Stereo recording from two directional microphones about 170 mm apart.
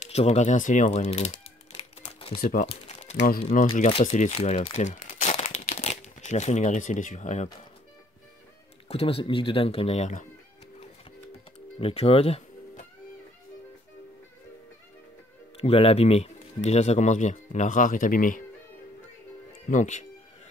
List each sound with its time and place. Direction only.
0.0 s crumpling: 40° left (ahead or behind)
3.2 s speech: 60° left (ahead or behind)
3.4 s speech: 40° left (ahead or behind)
4.8 s crumpling: 45° left (ahead or behind)
8.8 s speech: 35° left (ahead or behind)
11.8 s speech: 35° left (ahead or behind)
15.5 s speech: 35° left (ahead or behind); by 18.4 s 50° left (ahead or behind)
19.7 s speech: 45° left (ahead or behind)